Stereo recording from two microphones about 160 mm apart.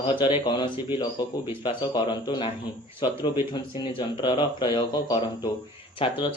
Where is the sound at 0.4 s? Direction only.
30° left (ahead or behind).